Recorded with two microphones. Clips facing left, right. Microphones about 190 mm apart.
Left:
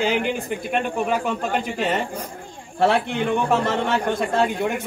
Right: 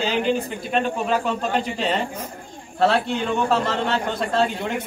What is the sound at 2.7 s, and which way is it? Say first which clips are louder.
A man's voice: even; 15° left (ahead or behind).